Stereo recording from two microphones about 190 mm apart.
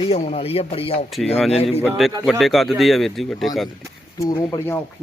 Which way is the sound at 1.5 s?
30° left (ahead or behind).